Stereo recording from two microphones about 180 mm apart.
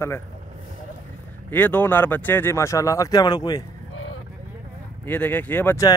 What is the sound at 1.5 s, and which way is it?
Speech, 10° left (ahead or behind).